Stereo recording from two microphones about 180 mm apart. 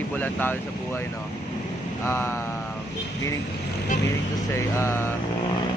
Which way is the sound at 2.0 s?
15° left (ahead or behind).